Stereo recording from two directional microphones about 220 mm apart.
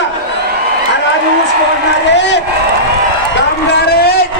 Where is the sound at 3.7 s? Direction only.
45° left (ahead or behind).